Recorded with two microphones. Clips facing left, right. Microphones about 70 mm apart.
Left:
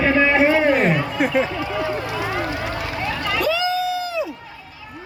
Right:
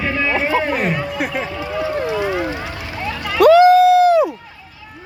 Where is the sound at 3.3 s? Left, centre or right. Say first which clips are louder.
Right 14 dB; right.